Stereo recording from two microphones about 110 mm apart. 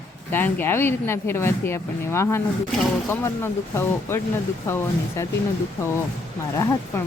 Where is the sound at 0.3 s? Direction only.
20° left (ahead or behind).